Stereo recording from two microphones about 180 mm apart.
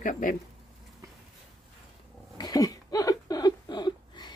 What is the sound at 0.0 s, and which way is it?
Speech, 45° left (ahead or behind).